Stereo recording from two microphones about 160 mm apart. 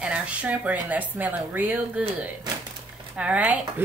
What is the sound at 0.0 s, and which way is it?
A woman's voice, 10° right (ahead or behind).